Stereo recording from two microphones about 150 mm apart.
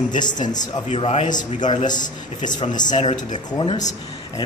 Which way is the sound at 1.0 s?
45° left (ahead or behind).